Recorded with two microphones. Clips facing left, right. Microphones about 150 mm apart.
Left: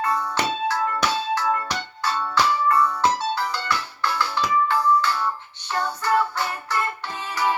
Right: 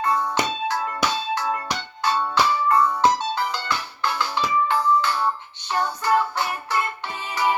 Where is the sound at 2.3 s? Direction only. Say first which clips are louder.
Left 1 dB; 20° right (ahead or behind).